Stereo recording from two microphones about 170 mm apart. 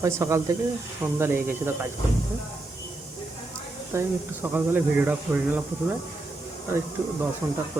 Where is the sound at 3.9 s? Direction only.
15° right (ahead or behind).